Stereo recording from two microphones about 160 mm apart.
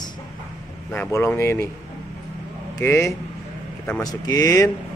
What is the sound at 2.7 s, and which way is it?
A man's voice, 20° left (ahead or behind).